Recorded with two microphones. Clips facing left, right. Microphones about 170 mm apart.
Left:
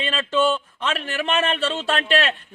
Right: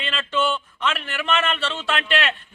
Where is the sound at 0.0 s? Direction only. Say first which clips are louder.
Left 3 dB; 35° left (ahead or behind).